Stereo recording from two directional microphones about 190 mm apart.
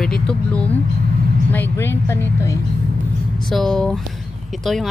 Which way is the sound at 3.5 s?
Centre (ahead or behind).